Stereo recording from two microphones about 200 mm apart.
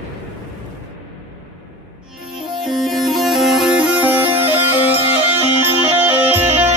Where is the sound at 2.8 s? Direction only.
Centre (ahead or behind).